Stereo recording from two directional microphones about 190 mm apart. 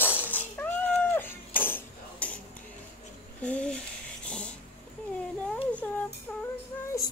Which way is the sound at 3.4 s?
5° left (ahead or behind).